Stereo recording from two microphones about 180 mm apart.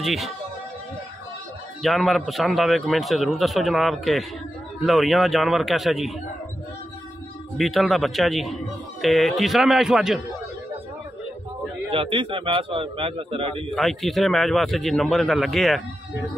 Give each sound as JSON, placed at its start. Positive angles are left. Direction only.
{"t": 0.0, "sound": "speech", "side_deg": 0}
{"t": 1.8, "sound": "a man's voice", "side_deg": 0}
{"t": 7.5, "sound": "a man's voice", "side_deg": 0}
{"t": 11.9, "sound": "a man's voice", "side_deg": -30}
{"t": 13.7, "sound": "a man's voice", "side_deg": 0}